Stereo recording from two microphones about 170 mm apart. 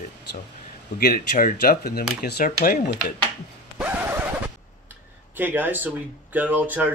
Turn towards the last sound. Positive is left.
turn(degrees=-10)  # may be behind; listen again after turning